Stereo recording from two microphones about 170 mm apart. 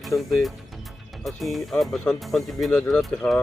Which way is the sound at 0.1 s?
20° left (ahead or behind).